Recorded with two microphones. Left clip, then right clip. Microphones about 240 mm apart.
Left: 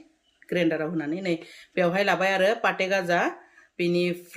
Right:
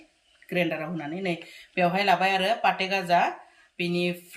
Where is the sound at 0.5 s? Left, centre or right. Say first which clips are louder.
Left 3 dB; centre.